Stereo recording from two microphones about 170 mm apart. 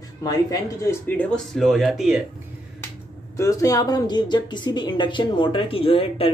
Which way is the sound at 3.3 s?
15° left (ahead or behind).